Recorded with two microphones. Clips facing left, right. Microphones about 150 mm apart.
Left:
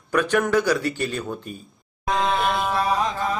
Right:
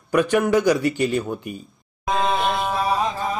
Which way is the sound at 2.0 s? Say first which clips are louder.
Right 1 dB; 15° right (ahead or behind).